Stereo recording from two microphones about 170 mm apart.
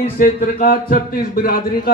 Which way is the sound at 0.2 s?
55° left (ahead or behind).